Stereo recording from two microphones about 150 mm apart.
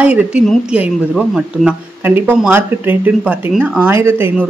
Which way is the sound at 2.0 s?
15° right (ahead or behind).